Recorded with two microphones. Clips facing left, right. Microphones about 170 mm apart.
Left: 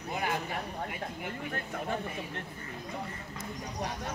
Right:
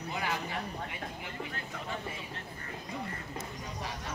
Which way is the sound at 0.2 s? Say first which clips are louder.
Left 3 dB; 50° left (ahead or behind).